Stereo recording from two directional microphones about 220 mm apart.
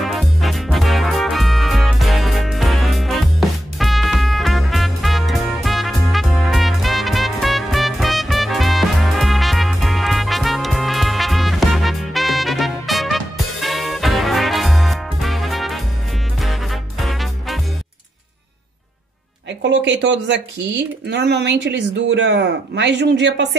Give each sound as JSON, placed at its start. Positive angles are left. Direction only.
{"t": 0.0, "sound": "music", "side_deg": 0}
{"t": 17.0, "sound": "music", "side_deg": 0}
{"t": 19.6, "sound": "speech", "side_deg": -55}